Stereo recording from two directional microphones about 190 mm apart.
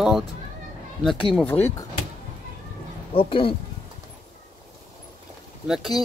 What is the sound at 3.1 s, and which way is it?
Speech, 25° left (ahead or behind).